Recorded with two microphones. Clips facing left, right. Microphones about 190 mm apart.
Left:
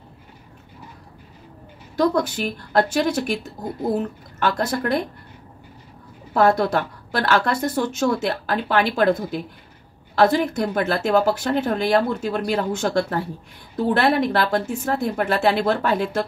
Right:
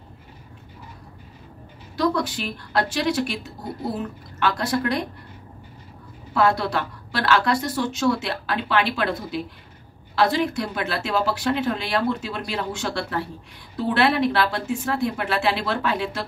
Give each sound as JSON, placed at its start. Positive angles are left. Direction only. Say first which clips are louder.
{"t": 2.0, "sound": "a woman's voice", "louder": "left 3 dB", "side_deg": 45}
{"t": 4.4, "sound": "a woman's voice", "louder": "left 1 dB", "side_deg": 45}
{"t": 6.3, "sound": "a woman's voice", "louder": "left 3 dB", "side_deg": 45}